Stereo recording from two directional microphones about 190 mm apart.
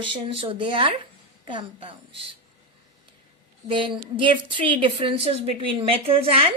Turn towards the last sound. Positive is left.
turn(degrees=-30)  # may be behind; listen again after turning